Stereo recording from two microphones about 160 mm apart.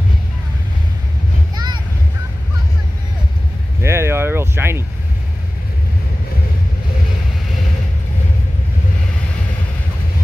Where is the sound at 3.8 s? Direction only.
15° right (ahead or behind).